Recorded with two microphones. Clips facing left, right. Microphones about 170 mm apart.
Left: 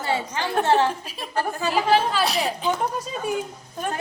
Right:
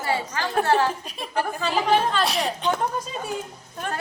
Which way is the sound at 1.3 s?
15° right (ahead or behind).